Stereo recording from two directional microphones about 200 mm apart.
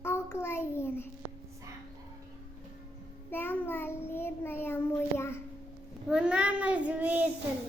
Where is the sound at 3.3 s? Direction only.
10° left (ahead or behind).